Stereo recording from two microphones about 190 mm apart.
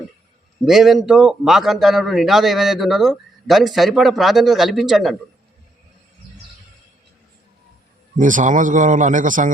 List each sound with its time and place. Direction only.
0.6 s a man's voice: centre (ahead or behind)
8.1 s a man's voice: 40° right (ahead or behind)